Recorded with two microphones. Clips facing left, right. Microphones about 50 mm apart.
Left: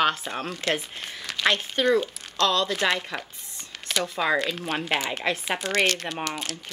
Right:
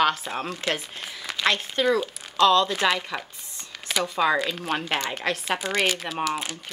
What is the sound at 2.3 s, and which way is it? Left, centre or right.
Speech, centre.